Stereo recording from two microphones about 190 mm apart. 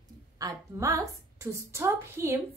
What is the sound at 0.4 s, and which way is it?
A woman's voice, 15° right (ahead or behind).